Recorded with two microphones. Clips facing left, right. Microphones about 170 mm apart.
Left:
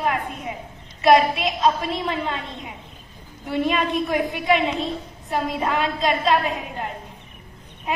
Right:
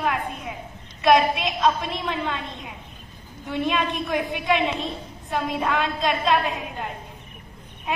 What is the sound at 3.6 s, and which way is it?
A woman's voice, centre (ahead or behind).